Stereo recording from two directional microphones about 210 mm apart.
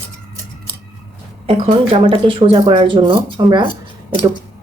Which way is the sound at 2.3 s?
25° right (ahead or behind).